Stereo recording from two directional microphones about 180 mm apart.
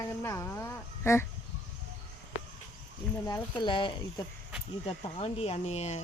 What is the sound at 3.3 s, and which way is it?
Speech, 20° left (ahead or behind).